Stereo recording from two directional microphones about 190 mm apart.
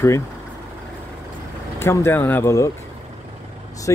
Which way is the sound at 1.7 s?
15° left (ahead or behind).